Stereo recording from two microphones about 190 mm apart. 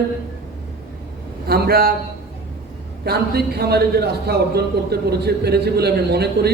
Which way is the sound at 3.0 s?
55° right (ahead or behind).